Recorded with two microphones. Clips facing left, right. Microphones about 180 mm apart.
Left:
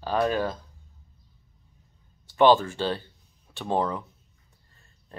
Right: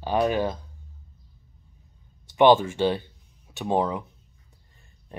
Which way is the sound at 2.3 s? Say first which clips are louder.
Right 2 dB; 15° right (ahead or behind).